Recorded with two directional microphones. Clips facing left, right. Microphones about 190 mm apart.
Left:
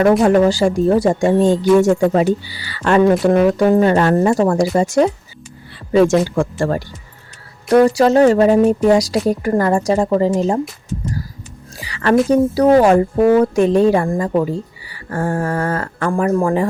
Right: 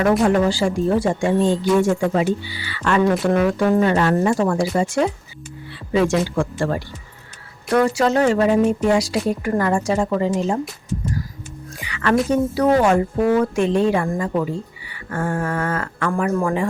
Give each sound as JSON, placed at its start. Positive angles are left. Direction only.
{"t": 0.2, "sound": "a woman's voice", "side_deg": 40}
{"t": 11.8, "sound": "a woman's voice", "side_deg": 35}